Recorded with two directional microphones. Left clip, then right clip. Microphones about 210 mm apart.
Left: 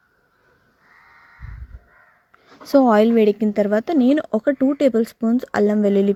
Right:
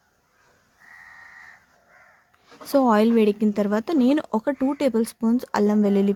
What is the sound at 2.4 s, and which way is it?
A woman's voice, 20° left (ahead or behind).